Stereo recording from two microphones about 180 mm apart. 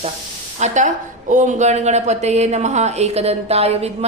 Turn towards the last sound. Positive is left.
turn(degrees=-35)  # may be behind; listen again after turning